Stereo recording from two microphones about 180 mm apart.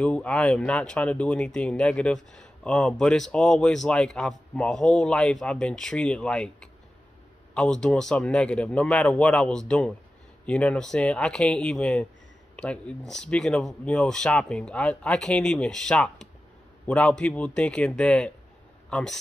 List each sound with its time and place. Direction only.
0.0 s speech: 5° left (ahead or behind)